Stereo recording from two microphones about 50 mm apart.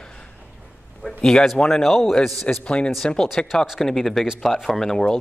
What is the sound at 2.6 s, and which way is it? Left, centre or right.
Speech, left.